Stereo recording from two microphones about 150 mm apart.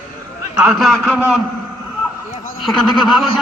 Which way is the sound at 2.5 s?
Centre (ahead or behind).